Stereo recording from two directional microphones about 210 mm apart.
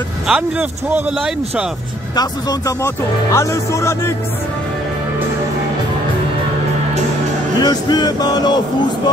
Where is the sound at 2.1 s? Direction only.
15° left (ahead or behind).